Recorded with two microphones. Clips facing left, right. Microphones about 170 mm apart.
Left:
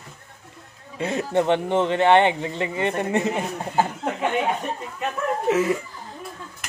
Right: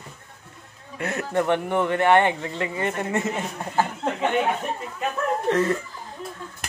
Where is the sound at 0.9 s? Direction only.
20° left (ahead or behind).